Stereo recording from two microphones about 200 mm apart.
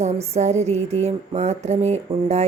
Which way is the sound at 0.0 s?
35° right (ahead or behind).